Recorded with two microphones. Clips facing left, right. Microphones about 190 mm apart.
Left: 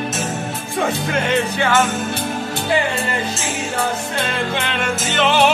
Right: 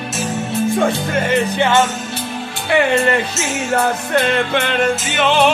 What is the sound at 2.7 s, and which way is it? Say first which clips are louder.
Music: right 7 dB; 65° right (ahead or behind).